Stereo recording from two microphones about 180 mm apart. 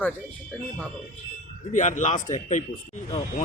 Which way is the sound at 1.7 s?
40° left (ahead or behind).